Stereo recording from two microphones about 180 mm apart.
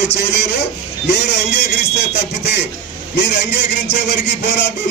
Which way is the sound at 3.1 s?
70° left (ahead or behind).